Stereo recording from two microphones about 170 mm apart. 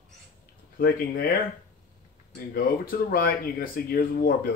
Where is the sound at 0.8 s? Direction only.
55° left (ahead or behind).